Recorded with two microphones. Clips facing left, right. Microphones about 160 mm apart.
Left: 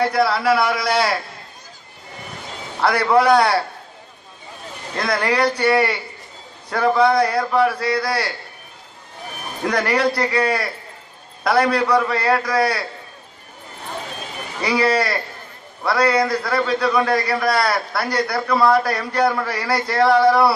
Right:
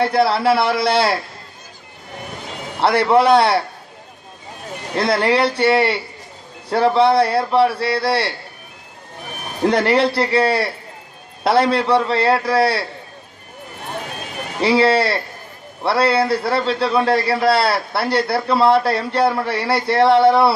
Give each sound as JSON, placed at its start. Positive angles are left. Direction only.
{"t": 0.0, "sound": "a man's voice", "side_deg": -30}
{"t": 2.8, "sound": "a man's voice", "side_deg": -25}
{"t": 4.9, "sound": "a man's voice", "side_deg": -25}
{"t": 9.6, "sound": "a man's voice", "side_deg": -25}
{"t": 14.6, "sound": "a man's voice", "side_deg": -30}